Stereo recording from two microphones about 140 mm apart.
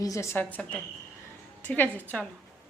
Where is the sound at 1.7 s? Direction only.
10° left (ahead or behind).